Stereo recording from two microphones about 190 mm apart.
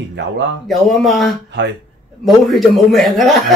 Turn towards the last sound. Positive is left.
turn(degrees=0)  # may be behind; listen again after turning